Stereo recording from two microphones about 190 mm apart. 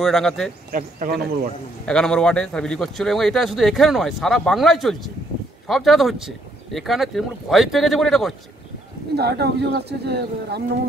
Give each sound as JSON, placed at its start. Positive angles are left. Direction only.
{"t": 0.0, "sound": "speech", "side_deg": 0}
{"t": 0.7, "sound": "a man's voice", "side_deg": -45}
{"t": 1.9, "sound": "speech", "side_deg": 5}
{"t": 9.1, "sound": "speech", "side_deg": -60}